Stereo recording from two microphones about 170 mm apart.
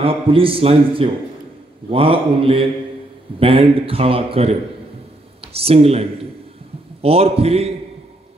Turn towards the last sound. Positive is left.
turn(degrees=-35)  # may be behind; listen again after turning